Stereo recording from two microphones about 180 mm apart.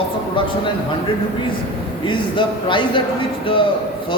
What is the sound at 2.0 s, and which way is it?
A man's voice, 25° left (ahead or behind).